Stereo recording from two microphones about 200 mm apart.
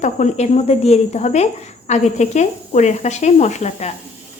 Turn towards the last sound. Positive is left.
turn(degrees=35)  # may be behind; listen again after turning